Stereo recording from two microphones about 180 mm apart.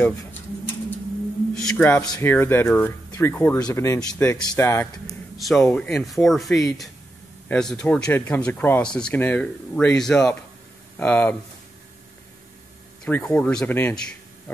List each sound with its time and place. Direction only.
0.0 s speech: 10° left (ahead or behind)
1.5 s speech: 5° left (ahead or behind)
5.4 s speech: 5° left (ahead or behind)
13.0 s speech: 5° left (ahead or behind)